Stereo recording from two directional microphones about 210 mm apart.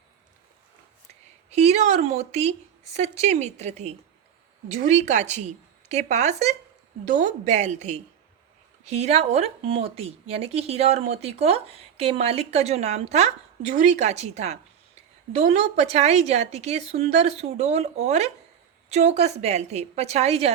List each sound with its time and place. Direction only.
1.5 s a woman's voice: 30° right (ahead or behind)